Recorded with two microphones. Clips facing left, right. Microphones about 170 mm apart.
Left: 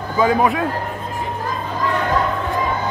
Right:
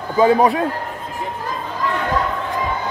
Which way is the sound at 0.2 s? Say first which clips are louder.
Right 3 dB; 35° right (ahead or behind).